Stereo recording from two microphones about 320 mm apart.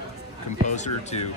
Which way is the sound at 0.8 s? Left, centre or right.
Left.